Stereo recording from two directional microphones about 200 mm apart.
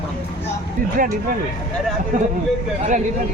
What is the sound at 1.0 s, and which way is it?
Speech, 45° right (ahead or behind).